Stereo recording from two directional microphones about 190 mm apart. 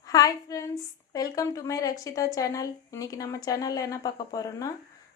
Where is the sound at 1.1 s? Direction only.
20° left (ahead or behind).